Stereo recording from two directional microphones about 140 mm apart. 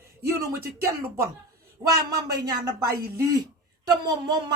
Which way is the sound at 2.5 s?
25° right (ahead or behind).